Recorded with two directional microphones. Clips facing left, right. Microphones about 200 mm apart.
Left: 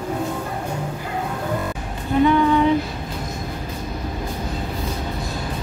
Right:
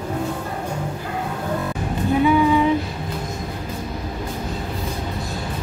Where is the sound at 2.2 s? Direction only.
10° right (ahead or behind).